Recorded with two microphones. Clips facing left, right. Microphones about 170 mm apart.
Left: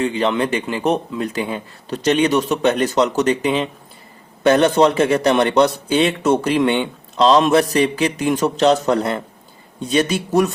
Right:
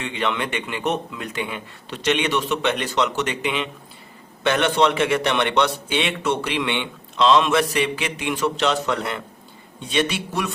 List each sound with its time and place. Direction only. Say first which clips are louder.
0.0 s a man's voice: left 7 dB; 35° left (ahead or behind)